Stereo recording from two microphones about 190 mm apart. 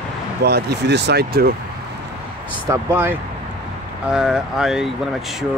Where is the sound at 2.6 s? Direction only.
15° right (ahead or behind).